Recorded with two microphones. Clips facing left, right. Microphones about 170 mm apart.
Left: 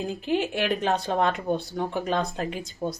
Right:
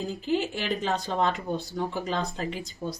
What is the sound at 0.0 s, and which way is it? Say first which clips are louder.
Speech: left 1 dB; 60° left (ahead or behind).